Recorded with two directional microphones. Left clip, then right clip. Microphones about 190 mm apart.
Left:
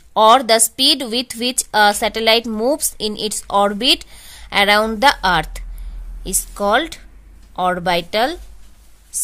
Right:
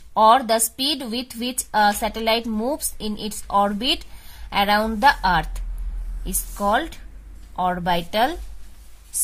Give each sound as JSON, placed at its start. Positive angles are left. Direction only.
{"t": 0.1, "sound": "a woman's voice", "side_deg": 45}